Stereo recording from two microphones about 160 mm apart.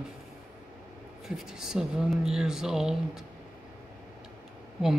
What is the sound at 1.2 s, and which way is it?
Speech, 5° right (ahead or behind).